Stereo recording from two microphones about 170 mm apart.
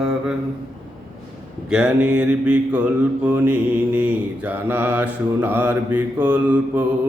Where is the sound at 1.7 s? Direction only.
5° right (ahead or behind).